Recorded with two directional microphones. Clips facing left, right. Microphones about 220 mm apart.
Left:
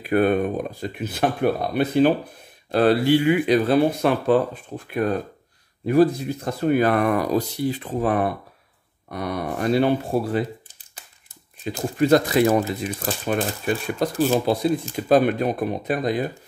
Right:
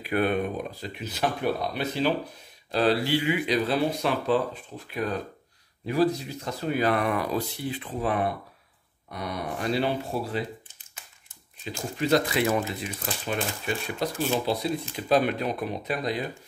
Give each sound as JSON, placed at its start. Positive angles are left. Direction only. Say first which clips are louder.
{"t": 0.0, "sound": "speech", "louder": "left 6 dB", "side_deg": 45}
{"t": 10.7, "sound": "a sound", "louder": "left 3 dB", "side_deg": 35}
{"t": 12.0, "sound": "speech", "louder": "left 7 dB", "side_deg": 45}